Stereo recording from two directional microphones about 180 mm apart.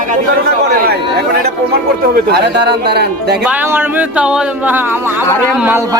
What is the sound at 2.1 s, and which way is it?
Speech, 65° right (ahead or behind).